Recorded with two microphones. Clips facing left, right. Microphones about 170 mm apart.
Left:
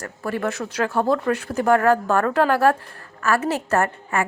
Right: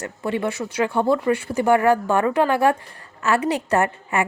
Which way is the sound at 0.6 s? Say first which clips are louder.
Right 1 dB; centre (ahead or behind).